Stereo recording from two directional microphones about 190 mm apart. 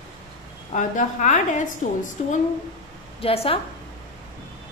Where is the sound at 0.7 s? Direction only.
40° left (ahead or behind).